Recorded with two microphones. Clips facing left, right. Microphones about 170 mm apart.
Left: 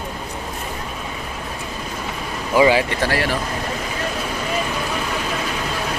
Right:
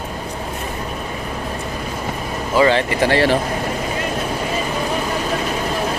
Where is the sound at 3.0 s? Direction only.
25° right (ahead or behind).